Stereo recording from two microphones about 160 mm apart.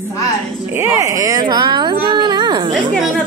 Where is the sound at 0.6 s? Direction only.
15° right (ahead or behind).